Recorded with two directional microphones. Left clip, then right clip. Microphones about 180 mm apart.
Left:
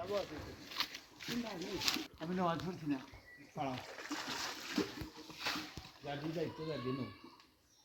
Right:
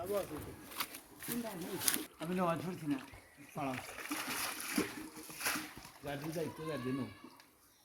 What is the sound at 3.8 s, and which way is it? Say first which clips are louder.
Splash: right 2 dB; 25° right (ahead or behind).